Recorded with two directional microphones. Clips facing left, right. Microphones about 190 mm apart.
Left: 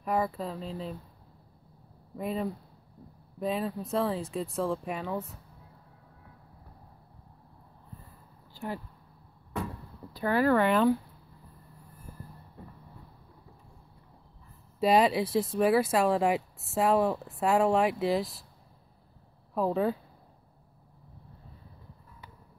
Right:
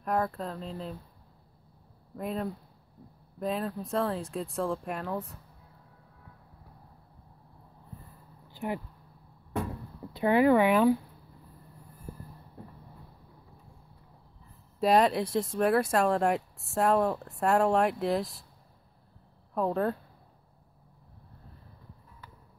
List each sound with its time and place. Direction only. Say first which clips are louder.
0.0 s speech: even; 5° left (ahead or behind)
2.1 s speech: left 1 dB; centre (ahead or behind)
8.5 s speech: right 3 dB; 20° right (ahead or behind)
10.1 s speech: right 3 dB; 20° right (ahead or behind)
14.8 s speech: even; centre (ahead or behind)
19.5 s speech: left 1 dB; centre (ahead or behind)